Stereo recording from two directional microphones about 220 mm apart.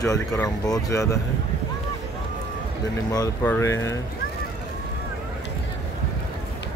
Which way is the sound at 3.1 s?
15° left (ahead or behind).